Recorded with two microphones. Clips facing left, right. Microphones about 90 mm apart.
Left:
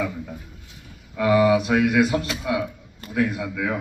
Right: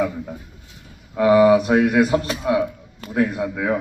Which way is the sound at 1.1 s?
35° right (ahead or behind).